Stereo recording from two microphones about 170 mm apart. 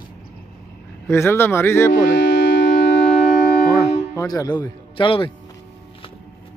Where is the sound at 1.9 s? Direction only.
65° left (ahead or behind); by 3.0 s 90° left.